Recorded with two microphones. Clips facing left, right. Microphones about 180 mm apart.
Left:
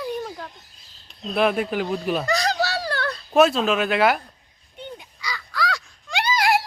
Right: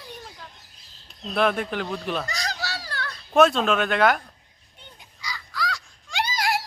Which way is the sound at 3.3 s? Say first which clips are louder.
Left 1 dB; 5° left (ahead or behind).